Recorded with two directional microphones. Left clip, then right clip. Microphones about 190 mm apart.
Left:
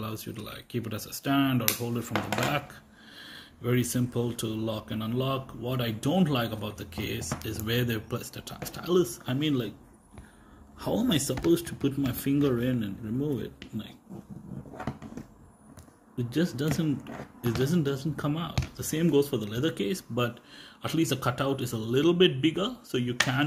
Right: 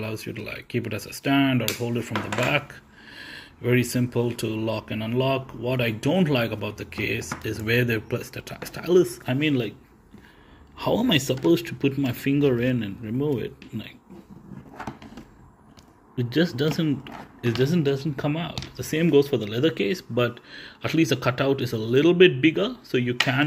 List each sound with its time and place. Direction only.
0.4 s speech: 40° left (ahead or behind)
0.7 s speech: 5° right (ahead or behind)
3.6 s speech: 5° right (ahead or behind)
5.7 s speech: 40° left (ahead or behind)
6.0 s speech: 5° right (ahead or behind)
10.8 s speech: 15° right (ahead or behind)
16.2 s speech: 10° right (ahead or behind)